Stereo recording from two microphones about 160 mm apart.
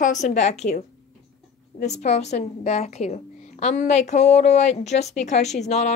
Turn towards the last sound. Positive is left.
turn(degrees=45)  # may be behind; listen again after turning